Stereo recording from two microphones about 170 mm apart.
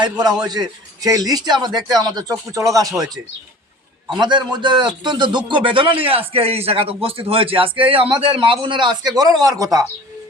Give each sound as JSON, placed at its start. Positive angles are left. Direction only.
{"t": 0.0, "sound": "speech", "side_deg": -25}
{"t": 4.2, "sound": "a man's voice", "side_deg": -25}